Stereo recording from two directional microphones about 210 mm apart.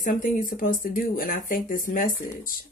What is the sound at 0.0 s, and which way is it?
Speech, 40° left (ahead or behind).